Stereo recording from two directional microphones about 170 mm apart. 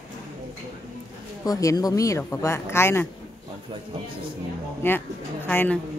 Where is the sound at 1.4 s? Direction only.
20° left (ahead or behind).